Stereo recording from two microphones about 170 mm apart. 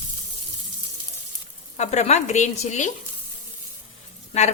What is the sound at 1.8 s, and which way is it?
A woman's voice, 40° left (ahead or behind).